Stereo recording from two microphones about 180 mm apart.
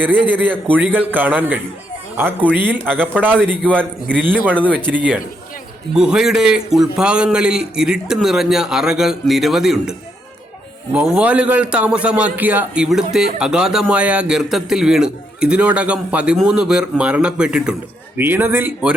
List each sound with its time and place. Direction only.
0.1 s a man's voice: 10° right (ahead or behind)
10.9 s a man's voice: 5° right (ahead or behind)